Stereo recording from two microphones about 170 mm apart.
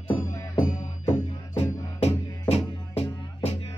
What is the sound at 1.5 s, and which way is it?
Music, 35° left (ahead or behind).